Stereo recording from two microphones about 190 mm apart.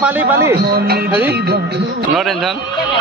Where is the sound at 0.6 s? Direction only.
55° right (ahead or behind).